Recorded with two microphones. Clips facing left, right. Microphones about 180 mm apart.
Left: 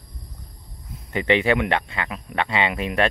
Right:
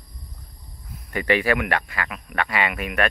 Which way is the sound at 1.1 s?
20° left (ahead or behind).